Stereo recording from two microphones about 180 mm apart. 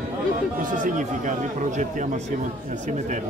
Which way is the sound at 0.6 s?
45° right (ahead or behind).